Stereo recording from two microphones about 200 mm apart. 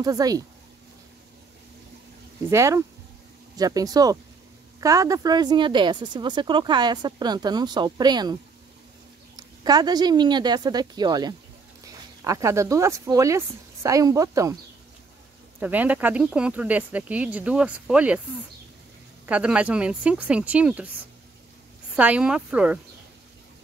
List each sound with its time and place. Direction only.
0.0 s speech: 20° right (ahead or behind)
2.5 s speech: 15° right (ahead or behind)
9.4 s speech: 20° right (ahead or behind)
15.6 s speech: 10° right (ahead or behind)
19.2 s speech: 5° right (ahead or behind)
21.9 s speech: 5° right (ahead or behind)